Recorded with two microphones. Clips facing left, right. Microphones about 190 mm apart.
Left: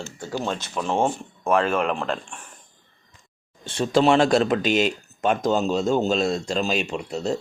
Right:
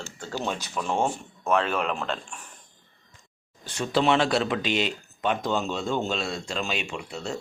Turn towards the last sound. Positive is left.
turn(degrees=40)  # may be behind; listen again after turning